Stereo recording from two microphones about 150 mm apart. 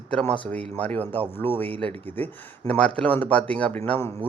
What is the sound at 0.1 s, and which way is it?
Speech, 5° left (ahead or behind).